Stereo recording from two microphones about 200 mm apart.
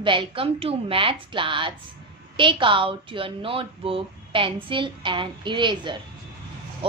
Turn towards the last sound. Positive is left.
turn(degrees=-25)  # may be behind; listen again after turning